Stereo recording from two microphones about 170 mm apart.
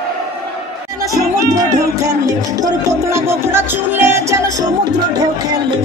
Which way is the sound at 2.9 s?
15° right (ahead or behind).